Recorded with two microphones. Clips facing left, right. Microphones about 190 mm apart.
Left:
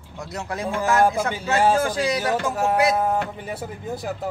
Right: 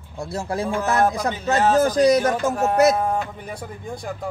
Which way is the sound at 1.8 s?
40° right (ahead or behind).